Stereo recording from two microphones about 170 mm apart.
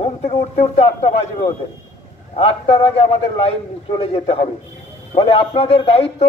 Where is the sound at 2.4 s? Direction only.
35° left (ahead or behind).